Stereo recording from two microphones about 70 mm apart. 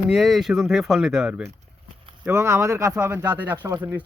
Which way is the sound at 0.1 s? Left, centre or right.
Centre.